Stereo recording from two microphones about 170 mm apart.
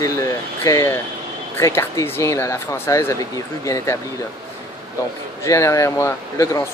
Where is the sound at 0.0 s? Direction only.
20° left (ahead or behind).